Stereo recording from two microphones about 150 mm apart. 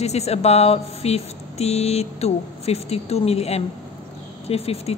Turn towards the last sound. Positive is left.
turn(degrees=40)  # may be behind; listen again after turning